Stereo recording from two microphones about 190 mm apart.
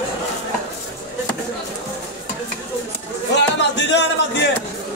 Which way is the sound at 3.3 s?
65° left (ahead or behind).